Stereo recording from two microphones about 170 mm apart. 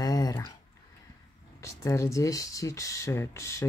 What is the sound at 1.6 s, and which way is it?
Speech, 20° left (ahead or behind).